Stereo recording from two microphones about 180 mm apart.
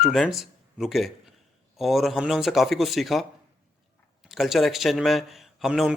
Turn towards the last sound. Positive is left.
turn(degrees=-5)  # may be behind; listen again after turning